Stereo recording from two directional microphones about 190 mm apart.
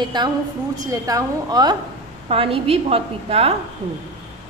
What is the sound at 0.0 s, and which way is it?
A woman's voice, 20° right (ahead or behind).